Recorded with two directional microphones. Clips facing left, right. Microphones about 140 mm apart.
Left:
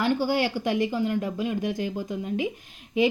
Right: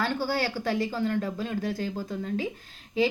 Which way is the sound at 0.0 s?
15° left (ahead or behind).